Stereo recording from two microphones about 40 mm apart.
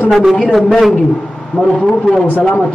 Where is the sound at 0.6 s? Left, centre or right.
Centre.